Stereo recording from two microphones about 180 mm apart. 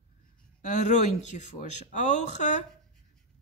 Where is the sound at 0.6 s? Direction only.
40° left (ahead or behind).